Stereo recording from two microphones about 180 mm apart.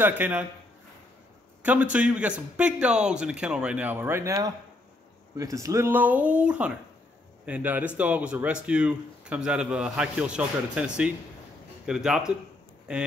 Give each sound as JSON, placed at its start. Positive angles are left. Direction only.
{"t": 0.0, "sound": "a man's voice", "side_deg": -10}
{"t": 1.6, "sound": "a man's voice", "side_deg": -10}